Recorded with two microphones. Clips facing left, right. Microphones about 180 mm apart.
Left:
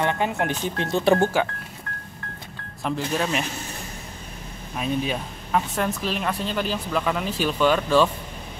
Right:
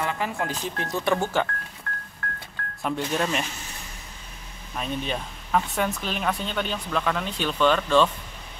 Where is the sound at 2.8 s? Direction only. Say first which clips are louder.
Left 1 dB; centre (ahead or behind).